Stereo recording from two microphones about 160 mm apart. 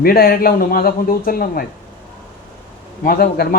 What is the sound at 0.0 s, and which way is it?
A man's voice, 70° left (ahead or behind).